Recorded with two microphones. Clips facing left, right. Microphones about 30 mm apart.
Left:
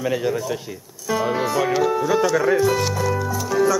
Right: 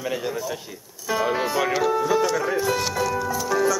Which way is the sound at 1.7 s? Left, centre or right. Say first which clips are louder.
Left 1 dB; centre.